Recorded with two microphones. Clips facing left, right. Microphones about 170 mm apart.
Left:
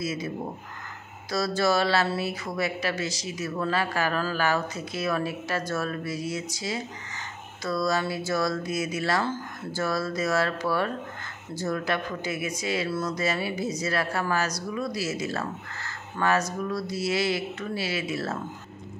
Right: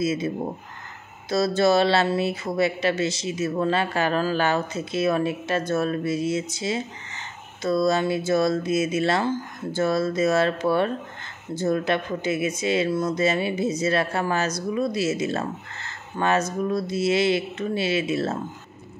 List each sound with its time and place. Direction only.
0.0 s speech: 25° right (ahead or behind)
1.3 s speech: 25° right (ahead or behind)